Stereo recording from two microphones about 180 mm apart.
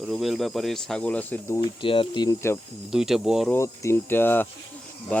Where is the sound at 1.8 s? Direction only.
30° left (ahead or behind).